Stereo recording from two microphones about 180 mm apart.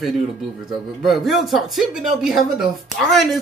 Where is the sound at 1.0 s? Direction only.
Centre (ahead or behind).